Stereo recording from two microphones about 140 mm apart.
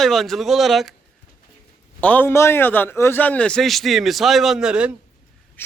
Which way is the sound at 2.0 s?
10° left (ahead or behind).